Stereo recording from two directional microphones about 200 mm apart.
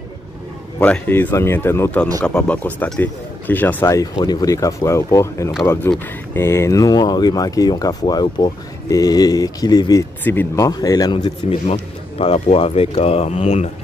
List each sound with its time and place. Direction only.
0.7 s speech: 10° left (ahead or behind); by 13.7 s 30° left (ahead or behind)